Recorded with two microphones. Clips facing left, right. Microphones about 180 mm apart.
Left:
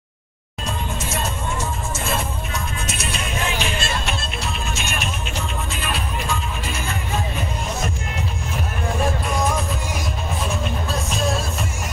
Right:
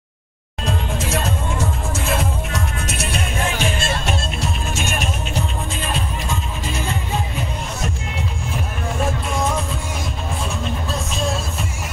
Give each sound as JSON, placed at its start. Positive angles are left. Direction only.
{"t": 2.1, "sound": "music", "side_deg": -80}
{"t": 3.4, "sound": "music", "side_deg": -45}